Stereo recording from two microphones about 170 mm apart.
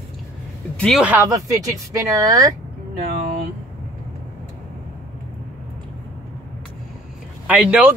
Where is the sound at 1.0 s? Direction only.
15° right (ahead or behind).